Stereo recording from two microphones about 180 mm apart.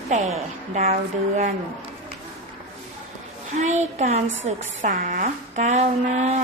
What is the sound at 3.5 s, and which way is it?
A woman's voice, 40° right (ahead or behind).